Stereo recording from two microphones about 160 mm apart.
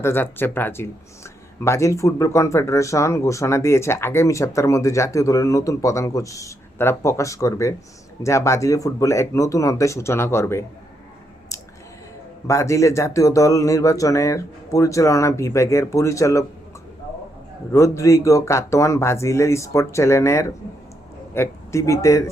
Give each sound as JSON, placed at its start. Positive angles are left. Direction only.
{"t": 0.0, "sound": "speech", "side_deg": 15}
{"t": 12.5, "sound": "speech", "side_deg": 20}
{"t": 17.7, "sound": "speech", "side_deg": 20}